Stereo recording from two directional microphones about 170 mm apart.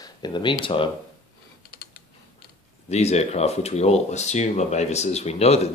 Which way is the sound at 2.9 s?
40° left (ahead or behind).